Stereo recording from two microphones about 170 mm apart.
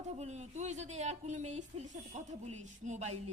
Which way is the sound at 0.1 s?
40° right (ahead or behind).